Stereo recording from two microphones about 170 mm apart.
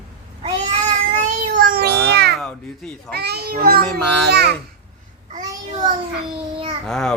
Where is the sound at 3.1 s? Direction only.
70° right (ahead or behind).